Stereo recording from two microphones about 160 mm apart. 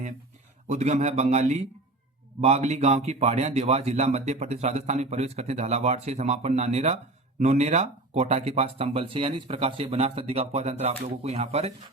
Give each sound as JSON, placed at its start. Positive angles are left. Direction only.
{"t": 0.7, "sound": "a man's voice", "side_deg": -45}